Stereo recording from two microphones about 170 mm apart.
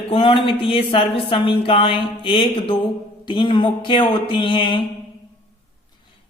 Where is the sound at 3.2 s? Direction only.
25° left (ahead or behind).